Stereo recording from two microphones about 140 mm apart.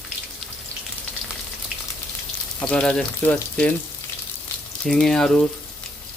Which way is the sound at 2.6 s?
10° left (ahead or behind).